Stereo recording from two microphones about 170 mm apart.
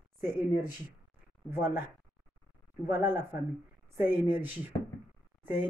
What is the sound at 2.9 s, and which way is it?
Speech, 15° right (ahead or behind).